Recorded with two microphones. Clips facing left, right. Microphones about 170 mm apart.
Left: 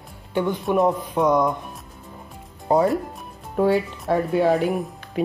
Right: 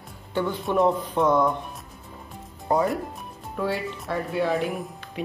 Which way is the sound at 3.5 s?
45° left (ahead or behind).